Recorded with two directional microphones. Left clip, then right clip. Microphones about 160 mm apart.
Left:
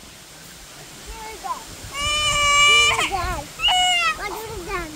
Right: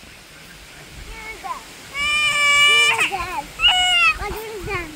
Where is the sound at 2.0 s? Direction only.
20° left (ahead or behind).